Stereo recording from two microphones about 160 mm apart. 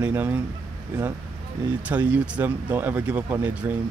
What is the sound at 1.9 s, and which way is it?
Speech, 10° right (ahead or behind).